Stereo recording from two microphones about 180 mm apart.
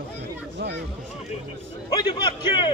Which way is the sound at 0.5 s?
75° right (ahead or behind).